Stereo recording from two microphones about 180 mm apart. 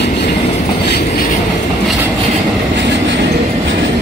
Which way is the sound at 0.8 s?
55° left (ahead or behind).